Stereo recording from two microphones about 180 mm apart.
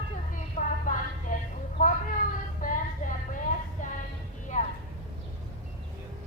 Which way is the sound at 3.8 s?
45° left (ahead or behind).